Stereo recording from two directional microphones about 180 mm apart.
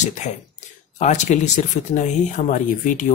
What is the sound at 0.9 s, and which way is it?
Speech, 40° left (ahead or behind).